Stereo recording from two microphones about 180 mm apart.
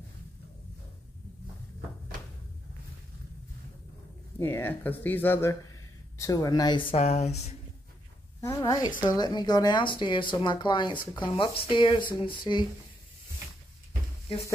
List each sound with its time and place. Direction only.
4.4 s speech: 10° left (ahead or behind); by 7.5 s 35° left (ahead or behind)
8.4 s speech: 20° left (ahead or behind)